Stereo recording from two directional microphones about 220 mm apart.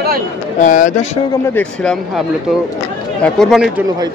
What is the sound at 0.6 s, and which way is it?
Speech, 35° left (ahead or behind).